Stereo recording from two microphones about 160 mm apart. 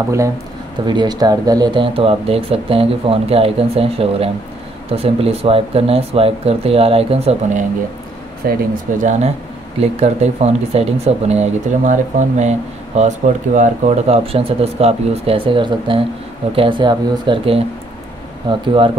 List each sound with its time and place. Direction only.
0.8 s speech: 25° right (ahead or behind)
8.5 s speech: 50° right (ahead or behind); by 18.6 s 30° right (ahead or behind)